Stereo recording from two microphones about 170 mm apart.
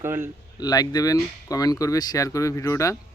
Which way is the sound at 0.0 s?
15° right (ahead or behind).